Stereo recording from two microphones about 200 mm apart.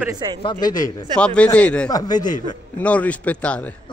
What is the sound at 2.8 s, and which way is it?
Speech, 5° left (ahead or behind).